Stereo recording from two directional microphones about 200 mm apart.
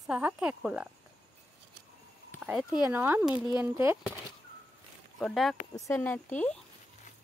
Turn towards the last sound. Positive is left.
turn(degrees=5)  # may be behind; listen again after turning